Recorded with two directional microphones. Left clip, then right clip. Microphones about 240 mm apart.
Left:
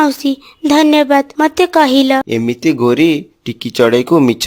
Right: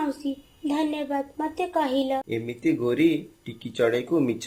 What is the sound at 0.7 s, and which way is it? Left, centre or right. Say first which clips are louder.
Speech: left 18 dB; left.